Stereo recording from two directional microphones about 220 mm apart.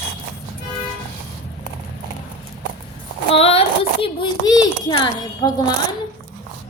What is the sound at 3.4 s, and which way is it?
A child's voice, 25° left (ahead or behind).